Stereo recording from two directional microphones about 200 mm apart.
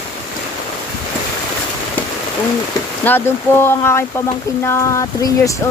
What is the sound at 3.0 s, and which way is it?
Speech, 10° left (ahead or behind).